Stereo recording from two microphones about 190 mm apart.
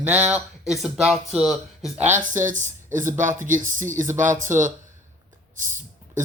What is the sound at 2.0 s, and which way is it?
Speech, 40° right (ahead or behind).